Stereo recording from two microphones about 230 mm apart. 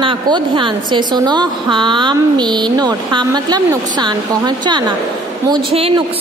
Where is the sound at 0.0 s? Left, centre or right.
Right.